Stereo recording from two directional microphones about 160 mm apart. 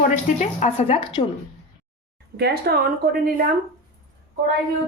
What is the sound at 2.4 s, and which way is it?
Speech, 75° right (ahead or behind).